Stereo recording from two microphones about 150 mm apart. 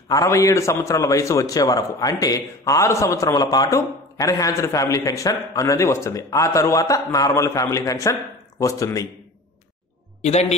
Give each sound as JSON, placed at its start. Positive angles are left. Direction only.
{"t": 0.1, "sound": "a man's voice", "side_deg": 20}